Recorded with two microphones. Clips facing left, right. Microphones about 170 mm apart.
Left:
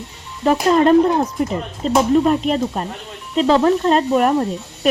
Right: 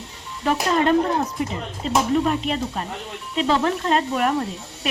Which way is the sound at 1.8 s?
40° left (ahead or behind).